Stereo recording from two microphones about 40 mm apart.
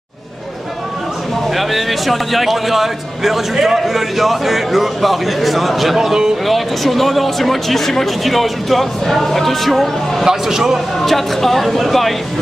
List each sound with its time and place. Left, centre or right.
1.5 s a man's voice: centre
5.9 s speech: centre
6.4 s a man's voice: centre
10.2 s speech: centre
11.0 s a man's voice: centre